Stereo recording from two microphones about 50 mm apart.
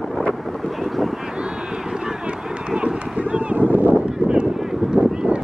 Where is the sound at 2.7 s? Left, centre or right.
Right.